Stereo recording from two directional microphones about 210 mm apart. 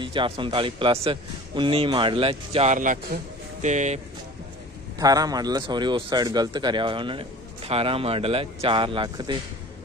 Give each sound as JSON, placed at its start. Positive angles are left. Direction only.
{"t": 0.0, "sound": "a man's voice", "side_deg": -25}
{"t": 4.9, "sound": "a man's voice", "side_deg": -15}